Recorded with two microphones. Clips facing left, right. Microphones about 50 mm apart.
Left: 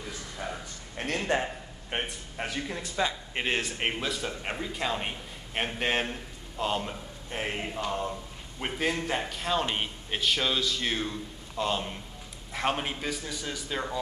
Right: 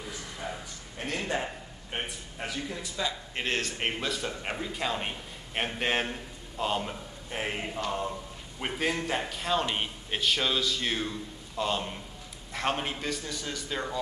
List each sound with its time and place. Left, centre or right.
1.0 s a man's voice: left
1.9 s a sound: left
3.3 s speech: centre